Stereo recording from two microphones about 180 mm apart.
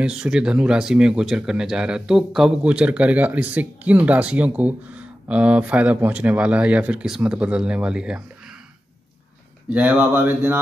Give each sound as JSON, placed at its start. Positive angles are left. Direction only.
{"t": 0.0, "sound": "speech", "side_deg": -5}
{"t": 9.7, "sound": "speech", "side_deg": -5}